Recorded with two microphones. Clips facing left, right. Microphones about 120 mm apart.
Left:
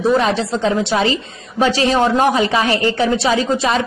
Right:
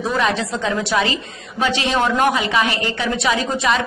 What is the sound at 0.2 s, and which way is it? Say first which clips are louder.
A woman's voice: left 3 dB; 30° left (ahead or behind).